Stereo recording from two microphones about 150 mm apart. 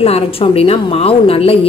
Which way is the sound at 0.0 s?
40° left (ahead or behind).